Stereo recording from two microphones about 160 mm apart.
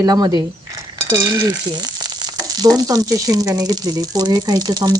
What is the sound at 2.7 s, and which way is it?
Speech, 25° right (ahead or behind).